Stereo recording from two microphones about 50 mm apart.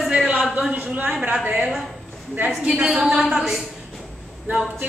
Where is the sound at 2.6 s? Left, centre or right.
Right.